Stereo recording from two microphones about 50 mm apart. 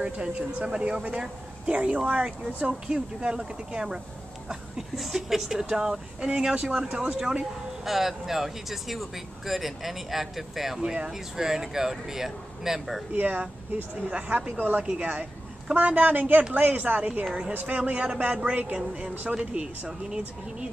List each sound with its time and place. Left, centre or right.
0.0 s speech: right
7.8 s speech: centre
13.1 s speech: right
17.2 s speech: right